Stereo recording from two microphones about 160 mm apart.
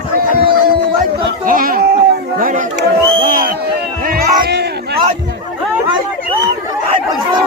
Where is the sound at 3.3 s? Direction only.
60° right (ahead or behind).